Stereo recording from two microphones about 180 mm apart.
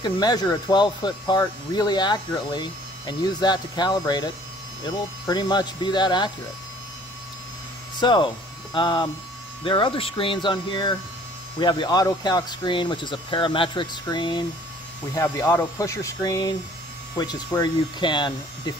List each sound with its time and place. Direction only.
0.0 s speech: 20° left (ahead or behind)
8.0 s speech: 25° left (ahead or behind)